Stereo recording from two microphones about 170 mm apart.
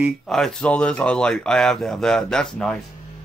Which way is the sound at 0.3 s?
5° left (ahead or behind).